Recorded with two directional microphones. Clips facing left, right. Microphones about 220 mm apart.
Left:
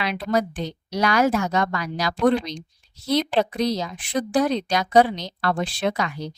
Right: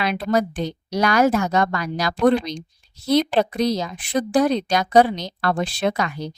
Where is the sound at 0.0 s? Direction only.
45° right (ahead or behind).